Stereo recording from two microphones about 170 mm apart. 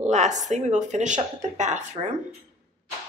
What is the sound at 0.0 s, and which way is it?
Speech, 45° right (ahead or behind).